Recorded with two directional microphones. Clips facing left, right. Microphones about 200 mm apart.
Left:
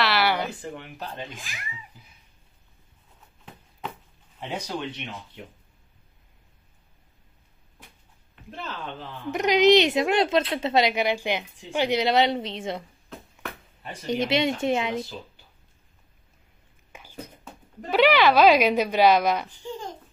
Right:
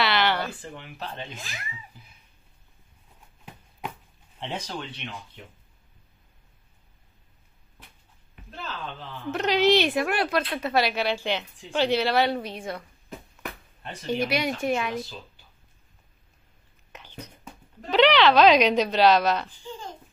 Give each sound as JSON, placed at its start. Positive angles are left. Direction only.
{"t": 0.0, "sound": "a sound", "side_deg": 5}
{"t": 0.5, "sound": "speech", "side_deg": 15}
{"t": 4.4, "sound": "speech", "side_deg": 10}
{"t": 9.3, "sound": "speech", "side_deg": 15}
{"t": 14.0, "sound": "speech", "side_deg": 20}
{"t": 16.9, "sound": "a sound", "side_deg": 10}
{"t": 17.8, "sound": "speech", "side_deg": 10}